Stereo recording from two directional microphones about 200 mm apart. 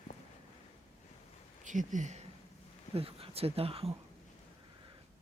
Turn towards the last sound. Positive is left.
turn(degrees=-30)  # may be behind; listen again after turning